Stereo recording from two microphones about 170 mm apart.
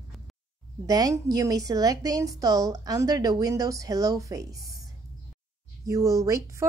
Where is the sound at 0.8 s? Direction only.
20° right (ahead or behind).